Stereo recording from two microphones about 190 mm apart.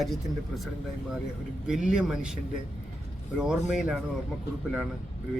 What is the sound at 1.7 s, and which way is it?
Speech, 5° right (ahead or behind).